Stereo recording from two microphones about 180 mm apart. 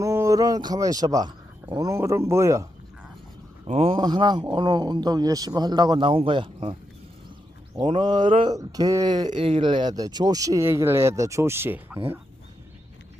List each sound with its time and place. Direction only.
0.0 s speech: 15° right (ahead or behind)
3.7 s speech: 35° right (ahead or behind)
8.0 s speech: 25° right (ahead or behind)